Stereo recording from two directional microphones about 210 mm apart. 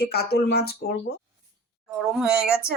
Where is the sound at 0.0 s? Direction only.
50° left (ahead or behind).